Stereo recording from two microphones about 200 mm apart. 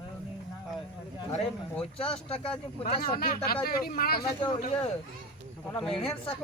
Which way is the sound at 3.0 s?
45° left (ahead or behind).